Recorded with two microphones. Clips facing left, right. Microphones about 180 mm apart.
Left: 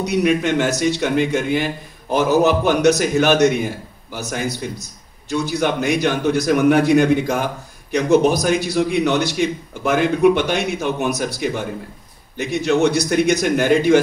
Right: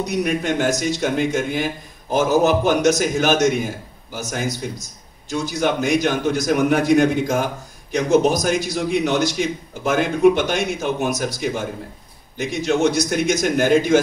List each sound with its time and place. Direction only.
0.0 s a man's voice: 70° left (ahead or behind)